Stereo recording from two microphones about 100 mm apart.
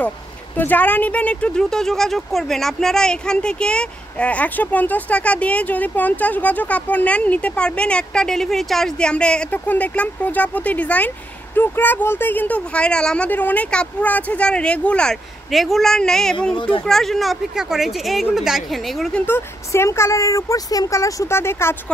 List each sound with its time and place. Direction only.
0.6 s speech: 15° left (ahead or behind); by 19.2 s centre (ahead or behind)
19.2 s speech: 25° left (ahead or behind)